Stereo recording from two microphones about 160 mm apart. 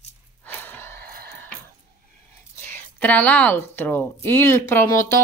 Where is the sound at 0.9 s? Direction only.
70° right (ahead or behind).